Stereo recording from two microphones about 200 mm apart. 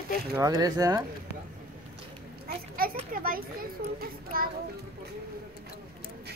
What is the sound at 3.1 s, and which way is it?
A child's voice, 45° right (ahead or behind).